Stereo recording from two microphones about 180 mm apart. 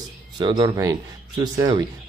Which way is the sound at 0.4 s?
25° right (ahead or behind).